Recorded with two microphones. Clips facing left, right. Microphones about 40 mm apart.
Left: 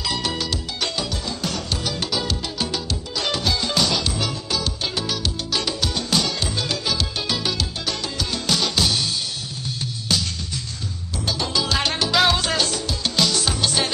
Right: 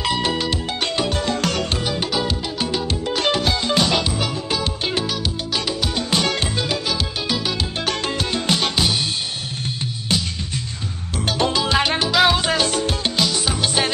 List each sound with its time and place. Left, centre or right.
0.1 s music: right
1.8 s music: right
2.8 s music: right
5.0 s music: centre
7.8 s music: right
11.2 s music: right
11.5 s salsa music: right
11.8 s music: right
12.1 s salsa music: centre
12.4 s music: centre
12.6 s music: right
13.2 s music: centre